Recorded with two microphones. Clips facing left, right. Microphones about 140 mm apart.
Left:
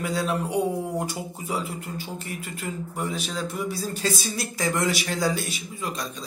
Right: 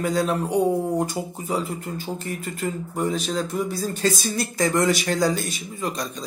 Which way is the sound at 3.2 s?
45° right (ahead or behind).